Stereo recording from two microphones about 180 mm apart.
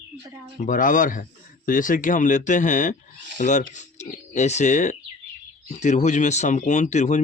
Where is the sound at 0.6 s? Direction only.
45° left (ahead or behind).